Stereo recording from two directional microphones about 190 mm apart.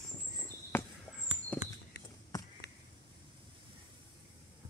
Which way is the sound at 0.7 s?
10° left (ahead or behind).